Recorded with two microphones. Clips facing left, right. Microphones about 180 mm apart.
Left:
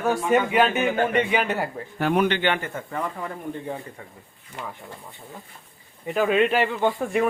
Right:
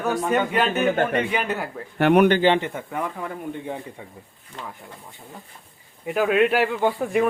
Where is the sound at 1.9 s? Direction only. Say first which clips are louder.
Right 6 dB; 65° right (ahead or behind).